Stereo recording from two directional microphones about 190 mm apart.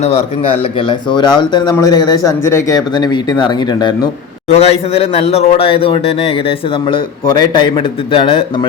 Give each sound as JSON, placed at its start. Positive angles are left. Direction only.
{"t": 0.0, "sound": "speech", "side_deg": 35}
{"t": 4.4, "sound": "a man's voice", "side_deg": 35}